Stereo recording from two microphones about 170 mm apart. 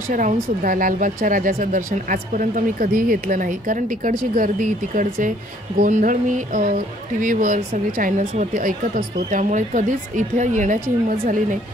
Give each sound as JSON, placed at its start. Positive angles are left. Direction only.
{"t": 0.1, "sound": "speech", "side_deg": -50}